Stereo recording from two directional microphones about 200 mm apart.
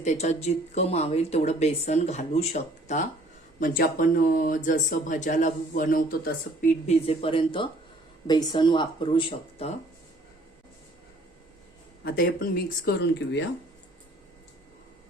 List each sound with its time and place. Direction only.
0.0 s speech: 35° left (ahead or behind)
6.8 s speech: 30° left (ahead or behind)
12.0 s speech: 45° left (ahead or behind)
13.0 s speech: 65° left (ahead or behind)